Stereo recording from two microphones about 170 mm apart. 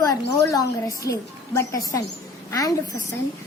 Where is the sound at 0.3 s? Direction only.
15° left (ahead or behind).